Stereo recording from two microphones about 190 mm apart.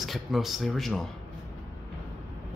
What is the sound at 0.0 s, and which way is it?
Speech, centre (ahead or behind).